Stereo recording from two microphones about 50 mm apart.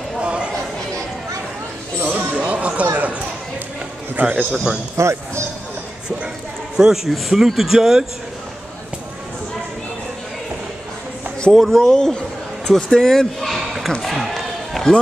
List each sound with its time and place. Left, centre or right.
0.2 s a sound: right
2.0 s a sound: right
4.2 s a man's voice: right
4.9 s speech: right
6.8 s a man's voice: centre
11.5 s speech: centre
14.7 s run: centre